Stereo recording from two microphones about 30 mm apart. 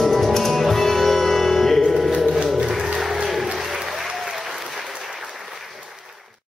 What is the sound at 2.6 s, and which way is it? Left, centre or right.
Music, centre.